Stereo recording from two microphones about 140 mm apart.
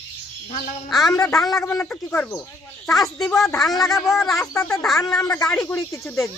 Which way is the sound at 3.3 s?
Centre (ahead or behind).